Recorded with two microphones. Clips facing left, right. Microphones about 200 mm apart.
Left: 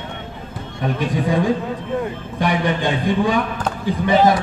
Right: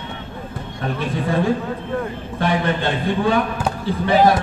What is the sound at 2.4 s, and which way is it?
Speech, 15° left (ahead or behind).